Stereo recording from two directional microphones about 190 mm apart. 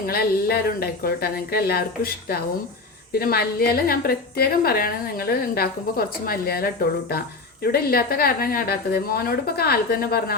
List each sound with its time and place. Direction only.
0.0 s a woman's voice: 55° left (ahead or behind)